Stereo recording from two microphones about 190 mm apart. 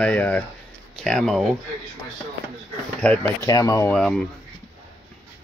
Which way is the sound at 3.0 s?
5° left (ahead or behind).